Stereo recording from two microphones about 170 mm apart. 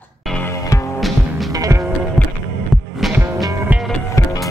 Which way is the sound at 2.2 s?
10° left (ahead or behind).